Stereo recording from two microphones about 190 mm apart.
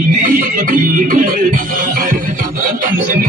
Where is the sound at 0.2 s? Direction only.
45° right (ahead or behind).